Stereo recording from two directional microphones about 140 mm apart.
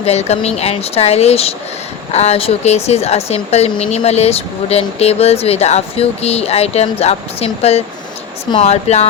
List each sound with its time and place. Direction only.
0.0 s speech: 50° left (ahead or behind)